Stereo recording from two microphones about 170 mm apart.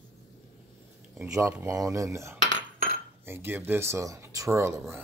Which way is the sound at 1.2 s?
15° right (ahead or behind).